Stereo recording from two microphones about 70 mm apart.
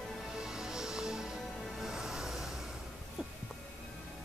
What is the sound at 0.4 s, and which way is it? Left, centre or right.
Music, centre.